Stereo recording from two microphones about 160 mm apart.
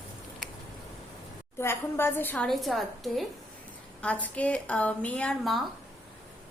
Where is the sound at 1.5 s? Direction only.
15° left (ahead or behind).